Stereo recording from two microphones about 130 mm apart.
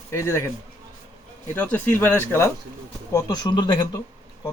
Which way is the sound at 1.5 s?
15° left (ahead or behind).